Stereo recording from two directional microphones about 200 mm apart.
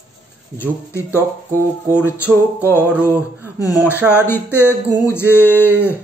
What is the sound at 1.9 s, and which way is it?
Speech, 5° right (ahead or behind).